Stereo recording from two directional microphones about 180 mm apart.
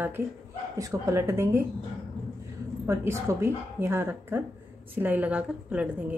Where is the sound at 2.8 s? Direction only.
15° right (ahead or behind).